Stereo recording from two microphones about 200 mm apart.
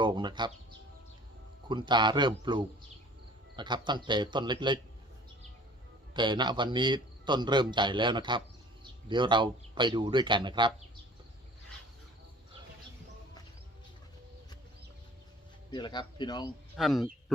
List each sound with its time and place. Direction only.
0.0 s a man's voice: 20° right (ahead or behind)
1.6 s a man's voice: 25° right (ahead or behind)
6.1 s a man's voice: 20° right (ahead or behind)
15.7 s a man's voice: 20° left (ahead or behind)
16.7 s a man's voice: centre (ahead or behind)